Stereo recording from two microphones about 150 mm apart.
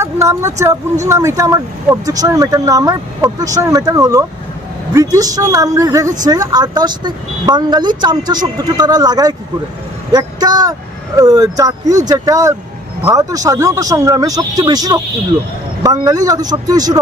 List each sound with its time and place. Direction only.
0.0 s speech: 20° right (ahead or behind)